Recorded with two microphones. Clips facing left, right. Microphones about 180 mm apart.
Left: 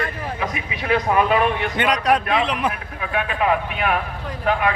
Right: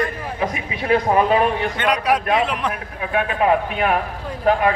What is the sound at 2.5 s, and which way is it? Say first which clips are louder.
Speech: left 1 dB; 5° left (ahead or behind).